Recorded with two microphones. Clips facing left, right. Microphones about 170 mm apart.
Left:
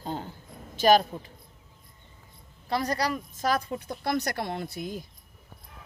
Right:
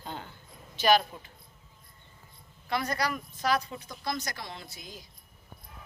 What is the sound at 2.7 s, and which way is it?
Speech, 35° left (ahead or behind).